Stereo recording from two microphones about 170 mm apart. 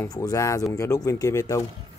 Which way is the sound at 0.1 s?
20° left (ahead or behind).